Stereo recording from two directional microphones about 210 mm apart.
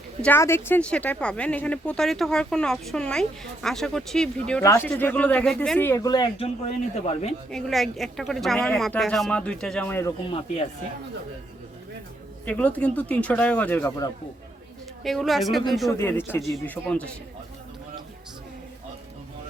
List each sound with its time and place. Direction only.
0.2 s speech: 10° left (ahead or behind)
4.6 s a man's voice: 15° left (ahead or behind)
7.5 s speech: centre (ahead or behind)
10.2 s speech: 25° left (ahead or behind)
12.5 s speech: 5° left (ahead or behind)
15.0 s speech: centre (ahead or behind)
15.9 s speech: 10° left (ahead or behind)